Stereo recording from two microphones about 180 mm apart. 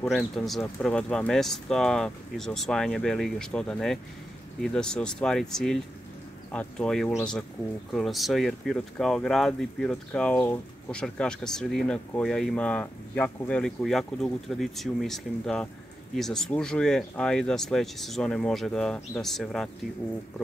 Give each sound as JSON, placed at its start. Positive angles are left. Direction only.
{"t": 0.1, "sound": "speech", "side_deg": 0}